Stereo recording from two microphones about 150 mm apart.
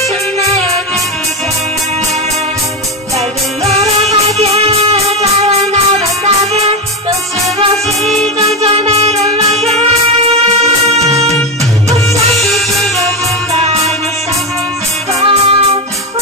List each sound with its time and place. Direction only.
0.5 s music: 45° right (ahead or behind)
3.2 s music: 45° right (ahead or behind)
8.0 s music: centre (ahead or behind)
8.4 s music: 40° right (ahead or behind)
12.4 s music: centre (ahead or behind)
13.0 s music: 45° right (ahead or behind)
15.1 s music: 40° right (ahead or behind)